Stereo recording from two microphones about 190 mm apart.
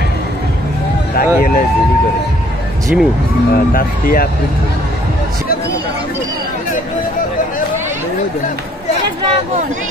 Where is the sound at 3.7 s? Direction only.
50° left (ahead or behind).